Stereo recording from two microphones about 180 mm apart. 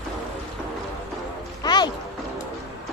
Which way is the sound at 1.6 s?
25° left (ahead or behind).